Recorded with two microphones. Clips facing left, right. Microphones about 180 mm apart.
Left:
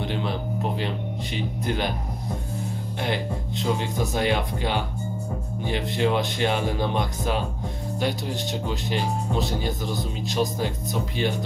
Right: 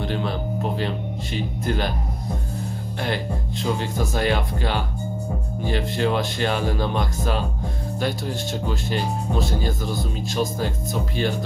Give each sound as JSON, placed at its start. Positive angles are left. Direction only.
{"t": 0.0, "sound": "music", "side_deg": 15}
{"t": 0.7, "sound": "speech", "side_deg": 15}
{"t": 3.0, "sound": "speech", "side_deg": 20}